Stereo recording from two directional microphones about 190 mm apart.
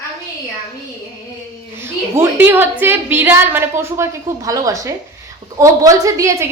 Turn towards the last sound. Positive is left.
turn(degrees=-15)  # may be behind; listen again after turning